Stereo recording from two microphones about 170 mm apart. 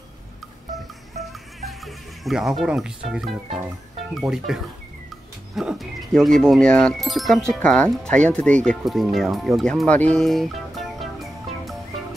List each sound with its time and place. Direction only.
0.7 s music: centre (ahead or behind)
4.3 s speech: 5° right (ahead or behind)